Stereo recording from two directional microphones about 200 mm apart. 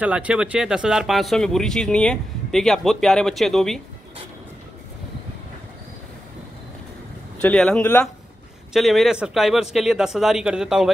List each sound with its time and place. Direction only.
0.0 s speech: 5° right (ahead or behind)
7.4 s speech: 5° left (ahead or behind)